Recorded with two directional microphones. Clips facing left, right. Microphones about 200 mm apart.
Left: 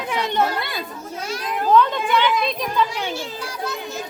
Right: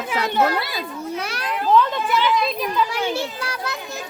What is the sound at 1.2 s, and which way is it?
Children playing, 70° right (ahead or behind).